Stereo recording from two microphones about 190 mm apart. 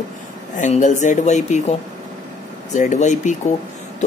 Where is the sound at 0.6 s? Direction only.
40° left (ahead or behind).